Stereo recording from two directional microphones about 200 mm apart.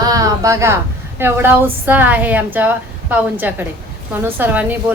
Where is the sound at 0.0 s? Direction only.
15° right (ahead or behind).